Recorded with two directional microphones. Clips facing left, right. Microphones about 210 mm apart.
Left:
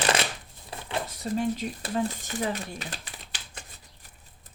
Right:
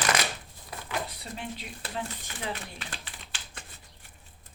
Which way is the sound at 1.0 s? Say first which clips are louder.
Left 11 dB; 45° left (ahead or behind).